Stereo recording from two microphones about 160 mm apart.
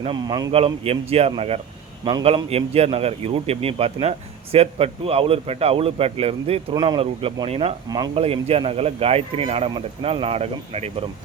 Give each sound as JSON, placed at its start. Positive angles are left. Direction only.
{"t": 0.0, "sound": "a man's voice", "side_deg": -30}
{"t": 0.5, "sound": "a man's voice", "side_deg": -40}
{"t": 7.9, "sound": "a man's voice", "side_deg": -25}
{"t": 8.1, "sound": "a man's voice", "side_deg": -40}